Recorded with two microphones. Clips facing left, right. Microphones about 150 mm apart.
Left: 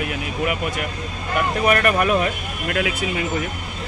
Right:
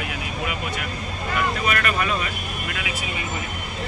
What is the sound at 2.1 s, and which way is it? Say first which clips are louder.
Speech: left 7 dB; 60° left (ahead or behind).